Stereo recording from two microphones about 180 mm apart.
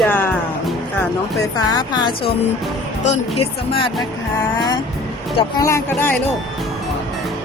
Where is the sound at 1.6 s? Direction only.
20° left (ahead or behind).